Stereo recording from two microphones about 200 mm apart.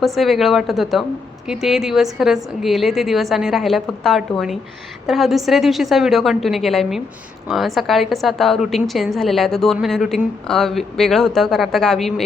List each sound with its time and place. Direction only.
0.0 s a woman's voice: centre (ahead or behind)